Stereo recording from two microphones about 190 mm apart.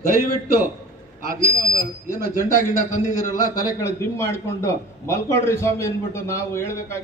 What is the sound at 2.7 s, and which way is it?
Speech, 40° left (ahead or behind).